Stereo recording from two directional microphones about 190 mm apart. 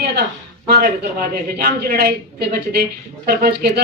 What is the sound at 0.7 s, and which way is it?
A woman's voice, 55° right (ahead or behind).